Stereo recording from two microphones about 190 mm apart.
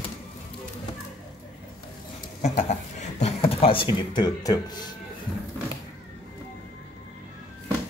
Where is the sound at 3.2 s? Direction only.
30° left (ahead or behind).